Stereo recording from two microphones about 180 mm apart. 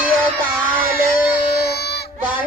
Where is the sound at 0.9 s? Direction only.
60° left (ahead or behind).